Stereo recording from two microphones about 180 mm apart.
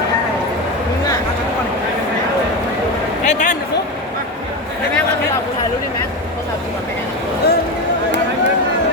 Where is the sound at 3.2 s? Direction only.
45° left (ahead or behind).